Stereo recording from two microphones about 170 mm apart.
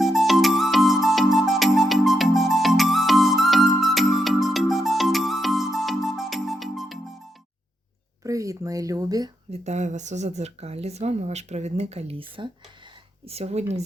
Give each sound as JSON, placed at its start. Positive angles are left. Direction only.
{"t": 0.0, "sound": "music", "side_deg": 0}
{"t": 8.2, "sound": "a sound", "side_deg": -20}
{"t": 9.5, "sound": "speech", "side_deg": -40}